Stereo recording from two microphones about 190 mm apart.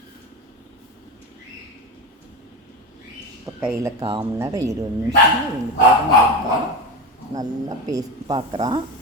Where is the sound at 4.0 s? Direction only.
30° right (ahead or behind).